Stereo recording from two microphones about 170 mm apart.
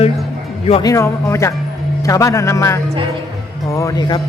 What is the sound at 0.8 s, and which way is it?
Speech, 20° left (ahead or behind).